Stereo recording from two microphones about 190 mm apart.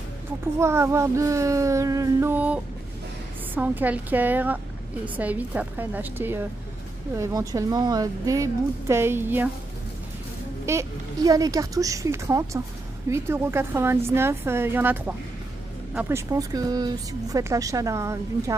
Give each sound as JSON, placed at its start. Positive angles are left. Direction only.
{"t": 0.6, "sound": "a woman's voice", "side_deg": -15}
{"t": 10.6, "sound": "a woman's voice", "side_deg": -15}